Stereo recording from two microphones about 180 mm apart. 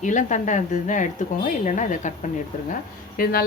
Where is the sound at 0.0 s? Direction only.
45° left (ahead or behind).